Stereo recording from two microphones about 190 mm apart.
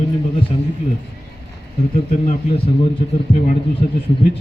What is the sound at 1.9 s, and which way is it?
Speech, 35° left (ahead or behind).